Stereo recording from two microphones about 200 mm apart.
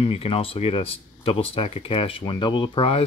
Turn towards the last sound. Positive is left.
turn(degrees=30)  # may be behind; listen again after turning